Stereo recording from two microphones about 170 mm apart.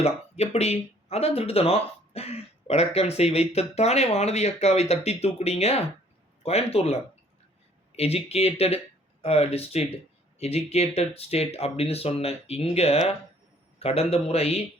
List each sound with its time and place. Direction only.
0.0 s speech: 40° left (ahead or behind)